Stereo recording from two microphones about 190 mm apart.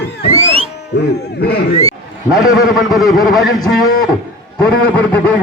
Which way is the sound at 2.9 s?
Centre (ahead or behind).